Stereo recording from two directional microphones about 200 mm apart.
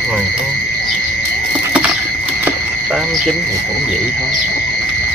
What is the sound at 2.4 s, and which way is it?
Frog, 5° right (ahead or behind).